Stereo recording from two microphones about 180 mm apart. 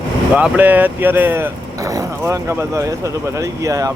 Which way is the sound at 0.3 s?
10° right (ahead or behind).